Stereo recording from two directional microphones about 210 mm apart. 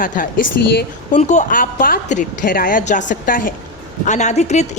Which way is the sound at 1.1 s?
35° left (ahead or behind).